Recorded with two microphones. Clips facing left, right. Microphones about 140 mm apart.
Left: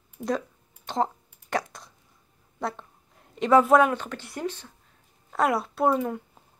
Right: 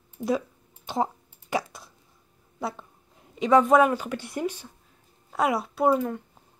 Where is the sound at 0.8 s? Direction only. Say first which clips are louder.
Even; 5° right (ahead or behind).